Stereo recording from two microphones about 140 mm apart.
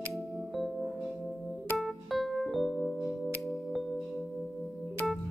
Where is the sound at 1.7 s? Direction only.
Centre (ahead or behind).